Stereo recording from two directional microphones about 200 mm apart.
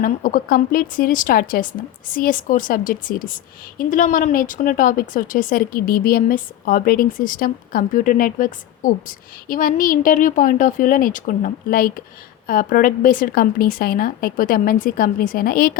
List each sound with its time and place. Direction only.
0.0 s speech: 45° left (ahead or behind)